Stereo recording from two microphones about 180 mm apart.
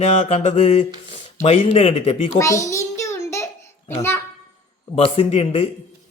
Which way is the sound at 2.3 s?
15° left (ahead or behind).